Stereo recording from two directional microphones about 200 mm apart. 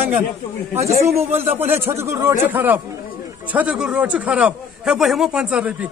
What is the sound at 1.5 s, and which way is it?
A man's voice, 10° right (ahead or behind).